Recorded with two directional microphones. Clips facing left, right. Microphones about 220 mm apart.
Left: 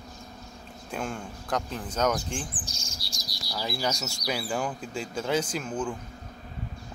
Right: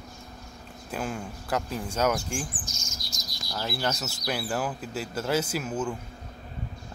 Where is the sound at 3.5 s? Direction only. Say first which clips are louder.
Even; centre (ahead or behind).